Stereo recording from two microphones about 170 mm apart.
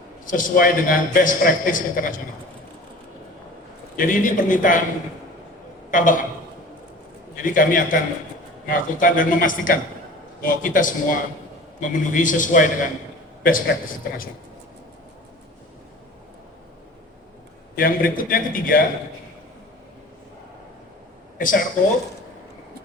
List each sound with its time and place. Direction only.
0.3 s a man's voice: 50° left (ahead or behind)
3.9 s a man's voice: 55° left (ahead or behind)
5.9 s a man's voice: 50° left (ahead or behind)
7.4 s a man's voice: 55° left (ahead or behind)
17.7 s a man's voice: 55° left (ahead or behind)
21.3 s speech: 55° left (ahead or behind)